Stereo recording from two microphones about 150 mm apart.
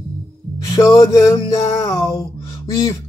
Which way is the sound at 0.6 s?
20° left (ahead or behind).